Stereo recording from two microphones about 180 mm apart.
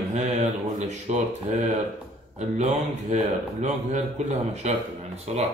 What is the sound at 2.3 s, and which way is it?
Speech, 40° right (ahead or behind).